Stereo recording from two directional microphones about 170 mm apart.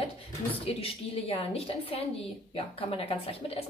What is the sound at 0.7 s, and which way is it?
Speech, 35° left (ahead or behind).